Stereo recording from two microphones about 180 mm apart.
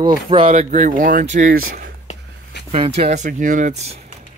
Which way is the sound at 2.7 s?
35° right (ahead or behind).